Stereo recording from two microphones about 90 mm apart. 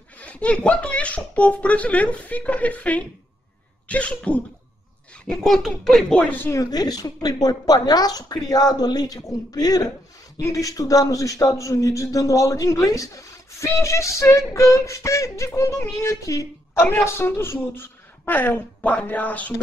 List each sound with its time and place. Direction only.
0.2 s speech: 15° left (ahead or behind)
6.3 s speech: 25° left (ahead or behind)
6.6 s a man's voice: 45° left (ahead or behind); by 19.5 s 15° left (ahead or behind)